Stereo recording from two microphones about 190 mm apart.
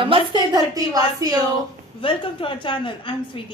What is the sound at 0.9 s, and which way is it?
Speech, 20° right (ahead or behind).